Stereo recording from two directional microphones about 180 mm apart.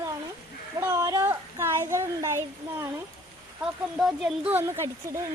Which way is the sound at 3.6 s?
5° right (ahead or behind).